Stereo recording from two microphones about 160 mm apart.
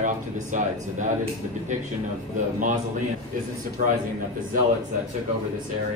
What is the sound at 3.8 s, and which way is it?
Speech, 60° right (ahead or behind).